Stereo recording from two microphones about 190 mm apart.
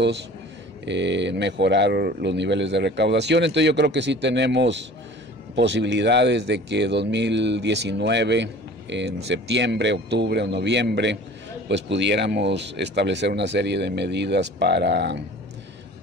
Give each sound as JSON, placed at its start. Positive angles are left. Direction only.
{"t": 0.8, "sound": "speech", "side_deg": -65}